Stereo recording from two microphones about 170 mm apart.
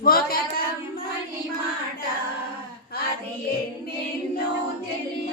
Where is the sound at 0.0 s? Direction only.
60° left (ahead or behind).